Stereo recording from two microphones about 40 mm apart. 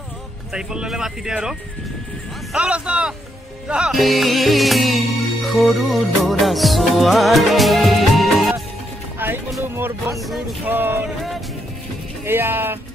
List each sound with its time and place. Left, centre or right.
0.5 s speech: centre
2.6 s speech: right
3.9 s music: centre
9.2 s music: right
9.6 s speech: right
10.6 s speech: right
12.3 s speech: right